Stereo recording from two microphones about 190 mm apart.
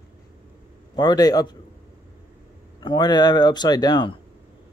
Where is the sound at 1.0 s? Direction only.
20° left (ahead or behind).